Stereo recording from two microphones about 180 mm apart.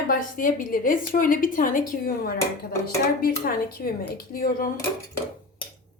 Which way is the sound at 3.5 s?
55° left (ahead or behind).